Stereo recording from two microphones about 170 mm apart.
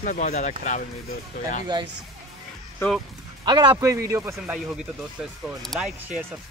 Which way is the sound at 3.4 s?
25° right (ahead or behind).